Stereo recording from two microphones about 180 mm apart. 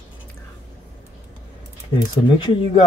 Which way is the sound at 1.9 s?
30° left (ahead or behind).